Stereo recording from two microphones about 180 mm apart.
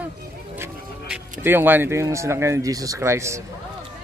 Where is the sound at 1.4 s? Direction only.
10° right (ahead or behind).